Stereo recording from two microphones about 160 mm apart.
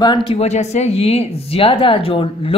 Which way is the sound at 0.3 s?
45° left (ahead or behind).